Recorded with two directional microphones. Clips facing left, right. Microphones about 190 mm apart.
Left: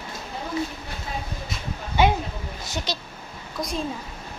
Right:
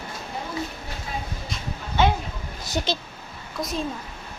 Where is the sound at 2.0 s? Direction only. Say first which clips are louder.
Left 1 dB; 10° left (ahead or behind).